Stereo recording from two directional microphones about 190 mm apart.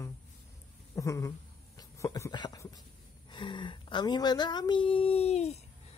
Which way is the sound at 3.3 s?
25° left (ahead or behind).